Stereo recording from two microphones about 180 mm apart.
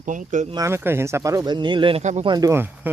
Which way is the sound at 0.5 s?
15° right (ahead or behind).